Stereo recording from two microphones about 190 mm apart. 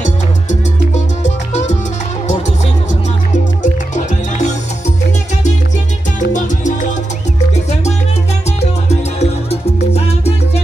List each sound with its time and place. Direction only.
0.0 s salsa music: 40° left (ahead or behind)
6.1 s salsa music: 40° left (ahead or behind)
8.5 s music: 35° left (ahead or behind)
9.9 s salsa music: 35° left (ahead or behind)